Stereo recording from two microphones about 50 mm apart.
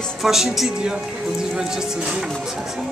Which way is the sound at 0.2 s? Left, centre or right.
Centre.